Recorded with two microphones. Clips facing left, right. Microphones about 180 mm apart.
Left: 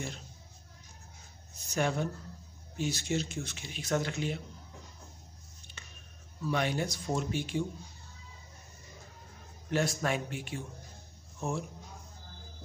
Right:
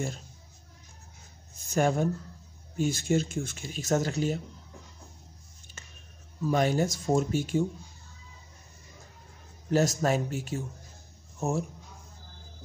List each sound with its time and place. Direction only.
1.6 s speech: 45° right (ahead or behind)
5.8 s a sound: 45° right (ahead or behind)
6.4 s speech: 40° right (ahead or behind)
9.7 s speech: 40° right (ahead or behind)